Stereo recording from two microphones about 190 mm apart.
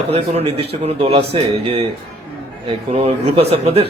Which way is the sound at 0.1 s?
30° right (ahead or behind).